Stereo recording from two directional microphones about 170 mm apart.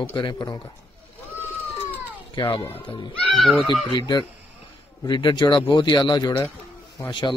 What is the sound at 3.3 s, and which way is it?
Speech, centre (ahead or behind).